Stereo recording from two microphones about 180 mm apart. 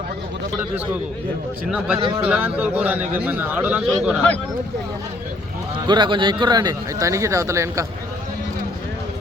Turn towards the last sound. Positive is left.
turn(degrees=-15)  # may be behind; listen again after turning